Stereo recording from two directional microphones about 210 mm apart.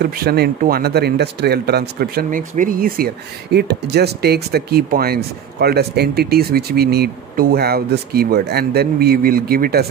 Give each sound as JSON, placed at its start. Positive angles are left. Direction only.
{"t": 0.0, "sound": "speech", "side_deg": -50}